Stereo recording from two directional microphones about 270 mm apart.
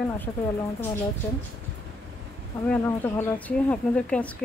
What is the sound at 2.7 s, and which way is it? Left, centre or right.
Speech, centre.